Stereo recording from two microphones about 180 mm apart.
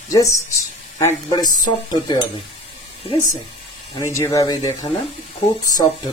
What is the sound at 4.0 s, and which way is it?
Speech, 15° left (ahead or behind).